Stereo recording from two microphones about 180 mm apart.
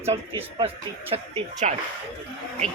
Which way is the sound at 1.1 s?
40° right (ahead or behind).